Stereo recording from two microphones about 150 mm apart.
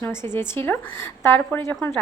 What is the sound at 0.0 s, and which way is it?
A woman's voice, 15° left (ahead or behind).